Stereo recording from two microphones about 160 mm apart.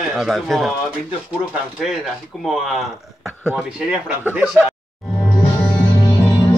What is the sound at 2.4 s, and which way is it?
Speech, centre (ahead or behind).